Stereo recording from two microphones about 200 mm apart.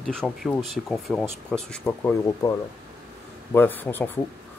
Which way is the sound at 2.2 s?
15° left (ahead or behind).